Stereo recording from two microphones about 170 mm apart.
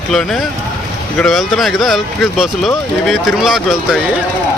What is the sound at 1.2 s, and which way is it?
Speech, centre (ahead or behind).